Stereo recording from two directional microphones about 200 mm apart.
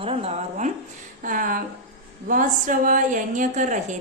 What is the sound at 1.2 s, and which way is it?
A woman's voice, 45° right (ahead or behind).